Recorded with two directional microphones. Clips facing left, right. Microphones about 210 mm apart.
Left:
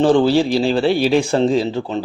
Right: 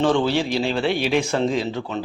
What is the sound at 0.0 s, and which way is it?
A man's voice, 35° left (ahead or behind).